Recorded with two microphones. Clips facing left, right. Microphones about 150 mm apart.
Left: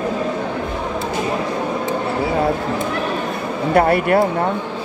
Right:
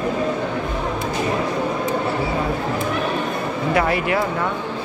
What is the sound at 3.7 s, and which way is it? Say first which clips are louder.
Speech: left 6 dB; 55° left (ahead or behind).